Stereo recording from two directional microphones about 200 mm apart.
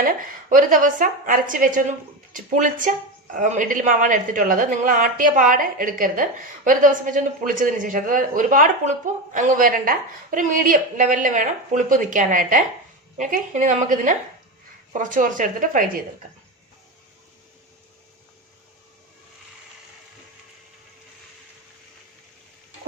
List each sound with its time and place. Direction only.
0.0 s a woman's voice: 45° right (ahead or behind)